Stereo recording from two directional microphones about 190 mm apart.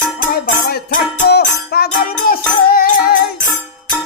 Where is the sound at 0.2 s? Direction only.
45° left (ahead or behind).